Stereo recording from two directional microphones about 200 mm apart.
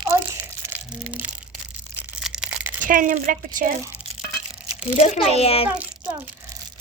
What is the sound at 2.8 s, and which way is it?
Speech, 40° right (ahead or behind).